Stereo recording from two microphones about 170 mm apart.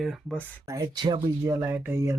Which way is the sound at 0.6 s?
20° right (ahead or behind).